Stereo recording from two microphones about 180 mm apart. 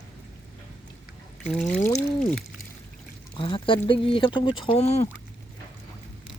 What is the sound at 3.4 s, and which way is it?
Speech, 30° left (ahead or behind).